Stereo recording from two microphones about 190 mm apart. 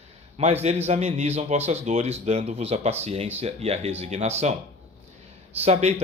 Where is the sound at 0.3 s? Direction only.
35° right (ahead or behind).